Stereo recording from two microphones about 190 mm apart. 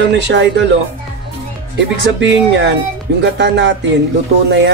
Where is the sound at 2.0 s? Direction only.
70° right (ahead or behind).